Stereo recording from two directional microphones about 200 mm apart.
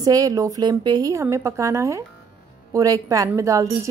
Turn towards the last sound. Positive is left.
turn(degrees=-15)  # may be behind; listen again after turning